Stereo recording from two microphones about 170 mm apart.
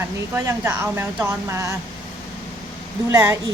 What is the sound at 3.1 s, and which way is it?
Speech, 15° right (ahead or behind).